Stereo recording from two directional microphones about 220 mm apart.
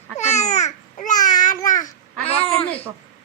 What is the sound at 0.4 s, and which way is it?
Babbling, 30° left (ahead or behind).